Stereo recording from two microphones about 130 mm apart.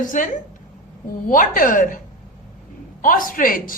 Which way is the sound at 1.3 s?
90° left.